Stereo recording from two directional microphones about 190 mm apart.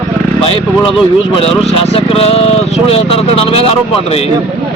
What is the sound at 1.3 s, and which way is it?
Speech, 30° left (ahead or behind).